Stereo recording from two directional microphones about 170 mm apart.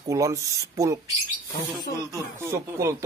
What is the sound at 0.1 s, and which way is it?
Speech, 20° right (ahead or behind).